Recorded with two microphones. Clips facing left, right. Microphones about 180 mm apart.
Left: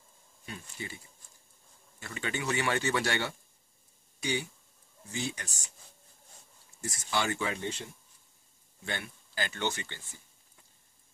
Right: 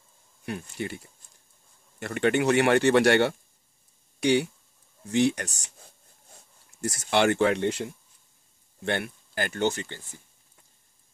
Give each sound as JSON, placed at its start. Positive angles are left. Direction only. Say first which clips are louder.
{"t": 0.5, "sound": "speech", "louder": "right 10 dB", "side_deg": -65}
{"t": 6.8, "sound": "speech", "louder": "right 9 dB", "side_deg": -70}
{"t": 8.8, "sound": "speech", "louder": "right 10 dB", "side_deg": -65}